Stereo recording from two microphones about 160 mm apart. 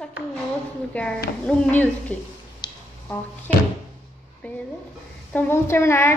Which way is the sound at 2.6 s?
25° left (ahead or behind).